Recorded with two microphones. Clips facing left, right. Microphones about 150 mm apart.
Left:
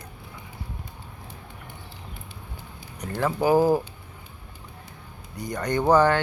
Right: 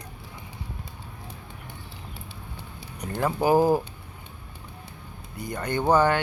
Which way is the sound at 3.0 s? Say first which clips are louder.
Left 1 dB; 15° right (ahead or behind).